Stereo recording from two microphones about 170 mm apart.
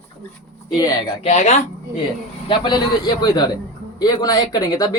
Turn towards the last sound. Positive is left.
turn(degrees=20)  # may be behind; listen again after turning